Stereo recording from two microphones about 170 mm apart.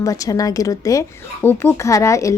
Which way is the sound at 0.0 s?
20° left (ahead or behind).